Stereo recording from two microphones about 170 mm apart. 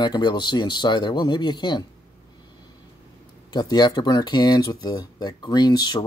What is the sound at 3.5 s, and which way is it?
Speech, 25° left (ahead or behind).